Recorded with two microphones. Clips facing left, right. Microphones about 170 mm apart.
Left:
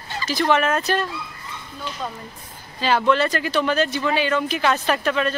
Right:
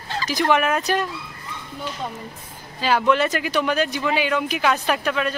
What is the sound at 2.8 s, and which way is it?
Speech, 10° right (ahead or behind).